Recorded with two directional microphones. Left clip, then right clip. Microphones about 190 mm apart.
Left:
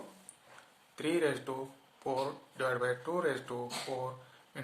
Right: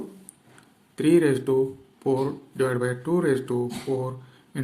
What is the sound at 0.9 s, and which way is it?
Speech, 35° right (ahead or behind).